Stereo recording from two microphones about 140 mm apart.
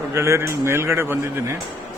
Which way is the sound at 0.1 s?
20° right (ahead or behind).